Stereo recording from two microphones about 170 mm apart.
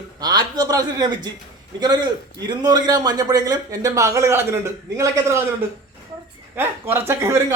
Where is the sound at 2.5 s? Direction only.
25° right (ahead or behind).